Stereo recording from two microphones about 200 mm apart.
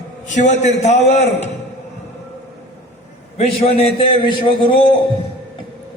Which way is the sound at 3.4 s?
30° left (ahead or behind).